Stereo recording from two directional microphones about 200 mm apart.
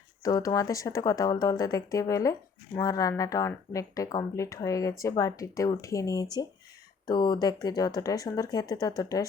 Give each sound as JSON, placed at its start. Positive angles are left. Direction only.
{"t": 0.2, "sound": "speech", "side_deg": 20}